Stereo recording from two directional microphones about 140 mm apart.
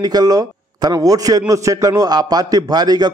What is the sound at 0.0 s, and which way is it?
A man's voice, 25° right (ahead or behind).